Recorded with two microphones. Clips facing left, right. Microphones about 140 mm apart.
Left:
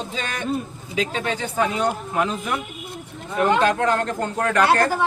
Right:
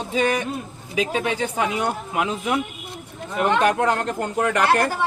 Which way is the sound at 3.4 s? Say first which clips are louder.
Even; 20° right (ahead or behind).